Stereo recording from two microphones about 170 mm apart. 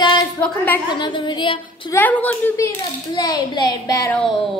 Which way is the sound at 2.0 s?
10° left (ahead or behind).